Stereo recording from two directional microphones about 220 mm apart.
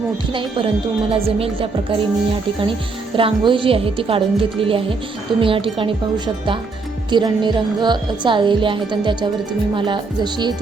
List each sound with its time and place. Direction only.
0.3 s speech: 25° right (ahead or behind)
3.2 s speech: 25° right (ahead or behind)